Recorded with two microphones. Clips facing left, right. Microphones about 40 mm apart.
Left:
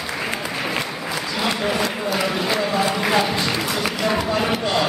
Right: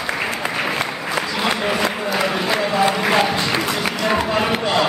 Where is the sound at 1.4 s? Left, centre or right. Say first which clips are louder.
Right 1 dB; centre.